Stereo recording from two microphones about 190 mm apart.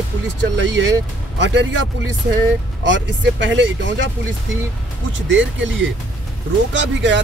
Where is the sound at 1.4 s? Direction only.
70° right (ahead or behind).